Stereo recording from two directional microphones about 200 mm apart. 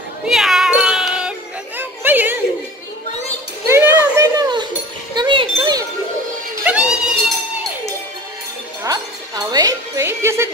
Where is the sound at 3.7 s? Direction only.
10° right (ahead or behind).